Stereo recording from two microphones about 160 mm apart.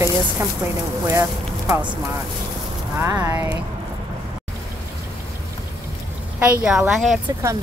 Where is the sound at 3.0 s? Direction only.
15° right (ahead or behind).